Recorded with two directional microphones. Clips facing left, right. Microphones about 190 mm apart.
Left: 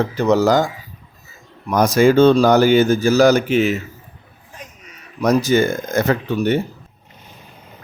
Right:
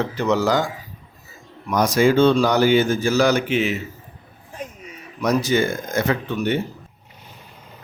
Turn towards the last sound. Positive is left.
turn(degrees=40)  # may be behind; listen again after turning